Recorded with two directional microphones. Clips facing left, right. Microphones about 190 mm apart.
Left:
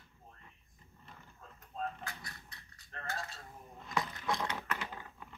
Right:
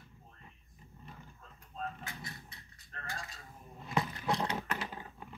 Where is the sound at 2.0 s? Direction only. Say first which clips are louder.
Right 1 dB; 20° right (ahead or behind).